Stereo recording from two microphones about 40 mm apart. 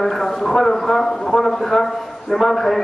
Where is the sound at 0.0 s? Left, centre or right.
Centre.